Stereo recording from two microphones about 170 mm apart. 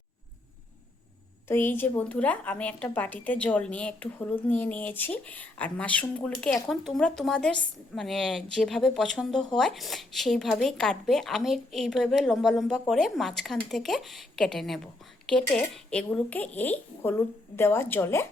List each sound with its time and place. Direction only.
1.5 s speech: 10° left (ahead or behind)